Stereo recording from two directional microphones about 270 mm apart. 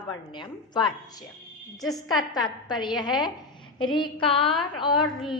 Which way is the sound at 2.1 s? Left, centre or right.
Centre.